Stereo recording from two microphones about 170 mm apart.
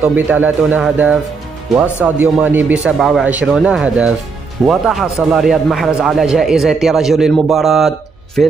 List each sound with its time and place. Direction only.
0.0 s a man's voice: 10° right (ahead or behind)